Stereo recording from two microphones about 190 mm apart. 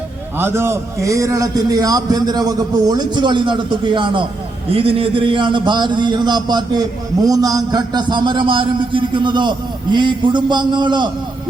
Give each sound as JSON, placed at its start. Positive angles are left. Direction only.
{"t": 0.3, "sound": "a man's voice", "side_deg": -10}